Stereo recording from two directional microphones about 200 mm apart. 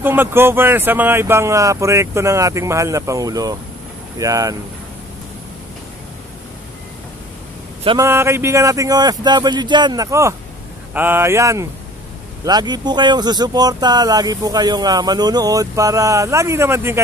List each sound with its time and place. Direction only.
0.0 s speech: 10° right (ahead or behind)
8.0 s speech: 15° right (ahead or behind)